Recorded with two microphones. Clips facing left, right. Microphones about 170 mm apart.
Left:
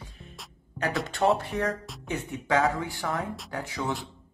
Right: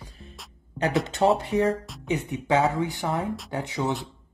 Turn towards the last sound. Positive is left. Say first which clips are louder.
# right 4 dB
turn(degrees=-20)  # may be behind; listen again after turning